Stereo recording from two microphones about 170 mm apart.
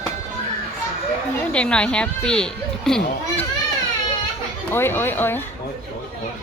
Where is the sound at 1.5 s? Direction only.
5° left (ahead or behind).